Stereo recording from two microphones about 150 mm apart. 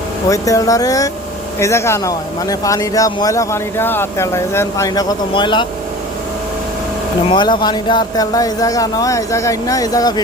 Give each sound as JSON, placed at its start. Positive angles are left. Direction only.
{"t": 0.3, "sound": "speech", "side_deg": 20}
{"t": 7.3, "sound": "speech", "side_deg": 30}